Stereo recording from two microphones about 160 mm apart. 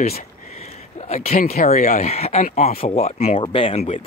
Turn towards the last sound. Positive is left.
turn(degrees=40)  # may be behind; listen again after turning